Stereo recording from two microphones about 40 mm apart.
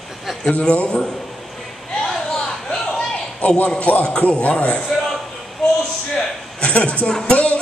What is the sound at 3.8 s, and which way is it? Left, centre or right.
Speech, left.